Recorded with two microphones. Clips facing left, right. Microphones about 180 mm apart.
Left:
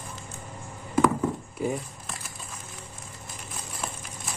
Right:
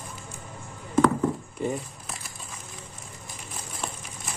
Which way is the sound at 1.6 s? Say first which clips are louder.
Left 3 dB; 5° left (ahead or behind).